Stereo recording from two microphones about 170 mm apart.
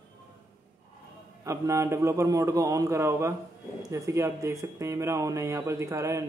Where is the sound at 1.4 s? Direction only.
15° right (ahead or behind).